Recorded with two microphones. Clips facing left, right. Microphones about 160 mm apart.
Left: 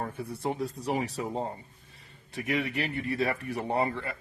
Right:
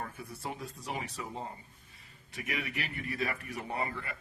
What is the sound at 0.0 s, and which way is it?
Speech, 30° left (ahead or behind).